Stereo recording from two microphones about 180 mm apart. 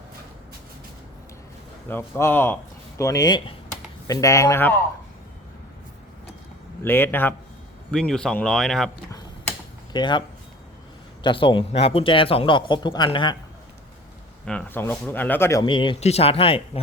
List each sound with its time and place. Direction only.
1.9 s speech: 15° left (ahead or behind)
6.8 s speech: 10° left (ahead or behind)
9.1 s a sound: 20° left (ahead or behind)
11.2 s speech: 25° left (ahead or behind)
14.4 s speech: 10° left (ahead or behind)
15.6 s speech: 25° left (ahead or behind)